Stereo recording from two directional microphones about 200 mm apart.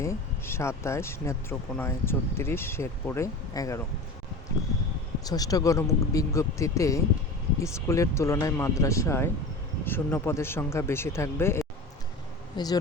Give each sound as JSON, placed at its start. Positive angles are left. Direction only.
{"t": 0.0, "sound": "speech", "side_deg": 15}
{"t": 5.2, "sound": "speech", "side_deg": 20}